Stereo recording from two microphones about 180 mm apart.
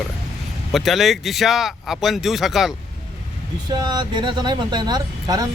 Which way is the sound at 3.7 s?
25° right (ahead or behind).